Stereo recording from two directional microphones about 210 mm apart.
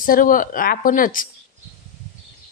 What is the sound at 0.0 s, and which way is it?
Speech, 40° left (ahead or behind).